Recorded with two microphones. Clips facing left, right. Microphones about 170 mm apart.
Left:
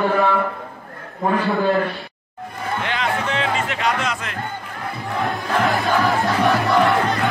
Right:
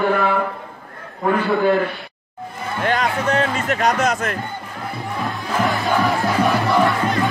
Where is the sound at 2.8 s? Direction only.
45° right (ahead or behind).